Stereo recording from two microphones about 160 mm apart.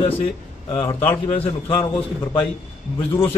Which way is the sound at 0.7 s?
15° left (ahead or behind).